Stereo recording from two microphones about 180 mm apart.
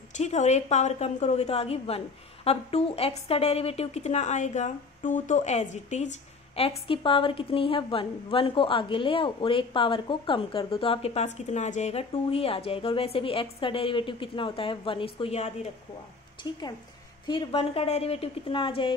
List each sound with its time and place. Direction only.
0.2 s a woman's voice: 40° left (ahead or behind)
16.5 s a woman's voice: 25° left (ahead or behind)